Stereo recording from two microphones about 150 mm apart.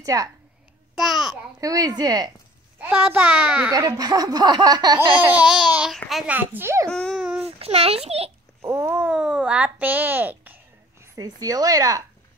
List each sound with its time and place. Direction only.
0.0 s a woman's voice: 20° right (ahead or behind)
0.9 s a child's voice: centre (ahead or behind)
1.6 s speech: 25° right (ahead or behind)
2.8 s a child's voice: 10° right (ahead or behind)
3.7 s speech: 25° right (ahead or behind)
5.3 s a child's voice: 5° right (ahead or behind)
6.3 s a child's voice: 15° right (ahead or behind)
6.9 s a child's voice: 5° left (ahead or behind)
7.4 s a child's voice: 40° right (ahead or behind)
8.5 s a child's voice: 15° right (ahead or behind)
11.1 s speech: 25° right (ahead or behind)